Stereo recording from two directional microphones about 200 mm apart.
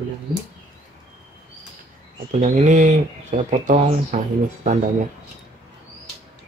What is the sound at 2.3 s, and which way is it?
Speech, 35° right (ahead or behind).